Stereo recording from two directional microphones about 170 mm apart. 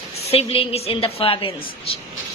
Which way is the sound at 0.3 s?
35° left (ahead or behind).